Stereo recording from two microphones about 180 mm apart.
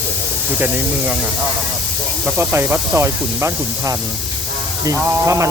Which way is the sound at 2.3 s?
10° right (ahead or behind).